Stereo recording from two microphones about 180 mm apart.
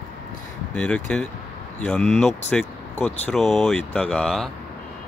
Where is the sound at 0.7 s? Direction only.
5° left (ahead or behind).